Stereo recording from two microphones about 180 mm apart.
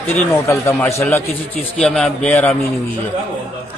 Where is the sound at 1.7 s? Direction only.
5° left (ahead or behind).